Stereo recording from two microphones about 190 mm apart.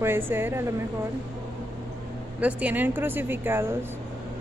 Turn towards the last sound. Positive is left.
turn(degrees=-15)  # may be behind; listen again after turning